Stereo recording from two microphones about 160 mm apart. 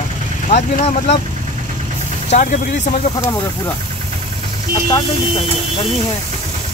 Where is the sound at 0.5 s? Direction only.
45° left (ahead or behind).